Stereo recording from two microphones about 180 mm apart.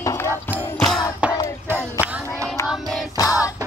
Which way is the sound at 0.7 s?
Centre (ahead or behind).